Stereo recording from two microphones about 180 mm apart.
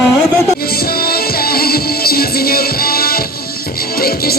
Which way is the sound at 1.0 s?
55° left (ahead or behind).